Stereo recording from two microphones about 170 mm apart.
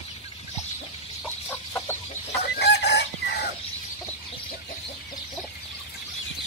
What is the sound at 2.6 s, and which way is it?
Chicken, 75° left (ahead or behind).